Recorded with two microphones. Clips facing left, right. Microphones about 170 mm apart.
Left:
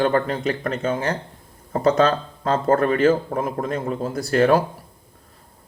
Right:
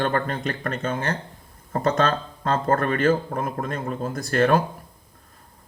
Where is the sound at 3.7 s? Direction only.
25° left (ahead or behind).